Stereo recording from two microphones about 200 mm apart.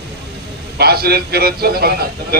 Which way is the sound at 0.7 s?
50° right (ahead or behind).